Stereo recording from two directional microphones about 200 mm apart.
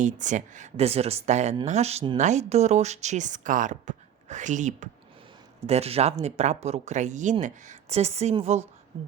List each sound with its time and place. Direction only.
0.0 s speech: 40° right (ahead or behind)